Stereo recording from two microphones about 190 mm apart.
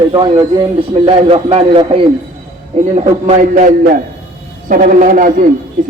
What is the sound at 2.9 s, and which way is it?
A man's voice, 40° right (ahead or behind).